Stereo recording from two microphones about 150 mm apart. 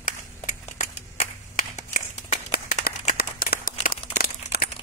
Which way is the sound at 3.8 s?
65° left (ahead or behind).